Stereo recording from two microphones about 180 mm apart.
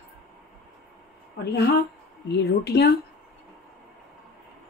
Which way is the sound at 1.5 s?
65° left (ahead or behind).